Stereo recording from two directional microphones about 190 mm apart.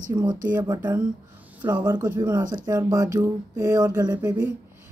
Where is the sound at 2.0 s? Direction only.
15° right (ahead or behind).